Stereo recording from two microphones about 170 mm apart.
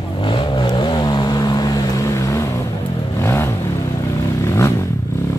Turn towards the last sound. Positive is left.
turn(degrees=15)  # may be behind; listen again after turning